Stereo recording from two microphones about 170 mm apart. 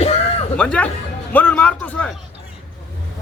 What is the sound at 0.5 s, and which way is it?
A man's voice, 5° left (ahead or behind).